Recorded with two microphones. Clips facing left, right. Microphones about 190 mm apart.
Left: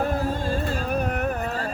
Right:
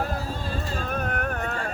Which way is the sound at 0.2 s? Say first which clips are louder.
Left 6 dB; 50° left (ahead or behind).